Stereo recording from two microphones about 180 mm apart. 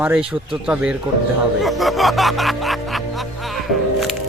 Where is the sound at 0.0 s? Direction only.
5° right (ahead or behind).